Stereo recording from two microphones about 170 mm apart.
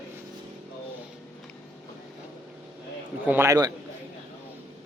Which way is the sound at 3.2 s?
10° right (ahead or behind).